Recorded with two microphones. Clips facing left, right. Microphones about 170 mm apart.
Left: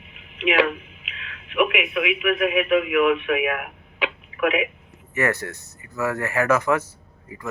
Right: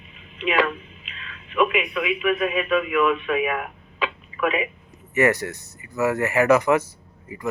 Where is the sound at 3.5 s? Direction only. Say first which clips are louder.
Right 2 dB; 80° left.